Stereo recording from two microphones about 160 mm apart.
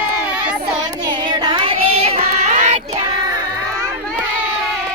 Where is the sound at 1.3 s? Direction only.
30° right (ahead or behind); by 2.8 s 50° right (ahead or behind).